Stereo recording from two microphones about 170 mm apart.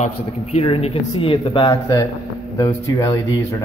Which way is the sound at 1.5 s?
20° left (ahead or behind).